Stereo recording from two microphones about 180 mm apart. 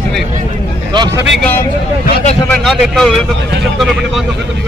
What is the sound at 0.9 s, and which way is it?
Speech, 20° right (ahead or behind).